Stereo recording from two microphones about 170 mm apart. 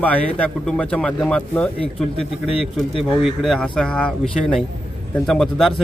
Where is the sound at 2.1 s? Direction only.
35° left (ahead or behind).